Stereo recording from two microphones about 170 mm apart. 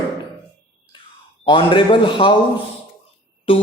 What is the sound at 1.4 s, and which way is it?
Speech, 30° left (ahead or behind).